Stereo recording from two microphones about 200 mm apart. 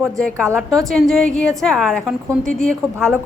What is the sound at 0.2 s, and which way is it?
A woman's voice, 5° left (ahead or behind).